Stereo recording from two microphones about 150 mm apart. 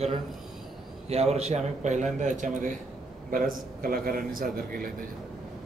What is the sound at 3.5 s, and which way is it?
A man's voice, 75° right (ahead or behind).